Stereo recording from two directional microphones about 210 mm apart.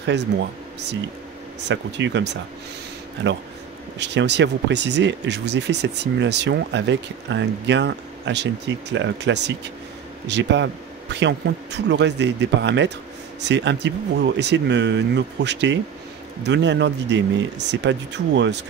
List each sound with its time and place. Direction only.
0.0 s speech: 55° right (ahead or behind)